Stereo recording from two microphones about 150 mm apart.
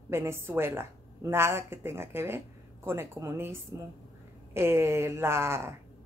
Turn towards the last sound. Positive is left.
turn(degrees=-15)  # may be behind; listen again after turning